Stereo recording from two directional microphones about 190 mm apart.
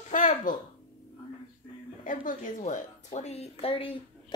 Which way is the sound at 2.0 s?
45° left (ahead or behind).